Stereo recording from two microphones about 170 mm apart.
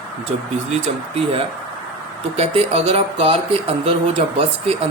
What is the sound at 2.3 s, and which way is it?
Speech, 35° right (ahead or behind).